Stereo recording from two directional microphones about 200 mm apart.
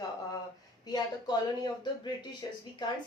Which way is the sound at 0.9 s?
20° left (ahead or behind).